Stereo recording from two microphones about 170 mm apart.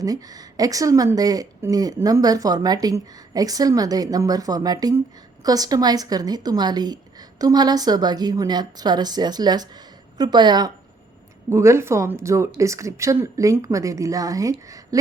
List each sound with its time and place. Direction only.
0.0 s speech: 20° right (ahead or behind)